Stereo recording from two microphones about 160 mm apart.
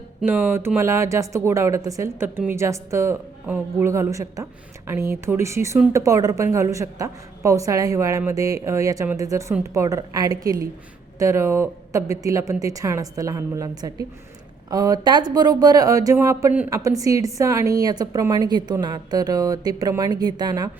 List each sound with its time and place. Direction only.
0.2 s a woman's voice: 15° right (ahead or behind)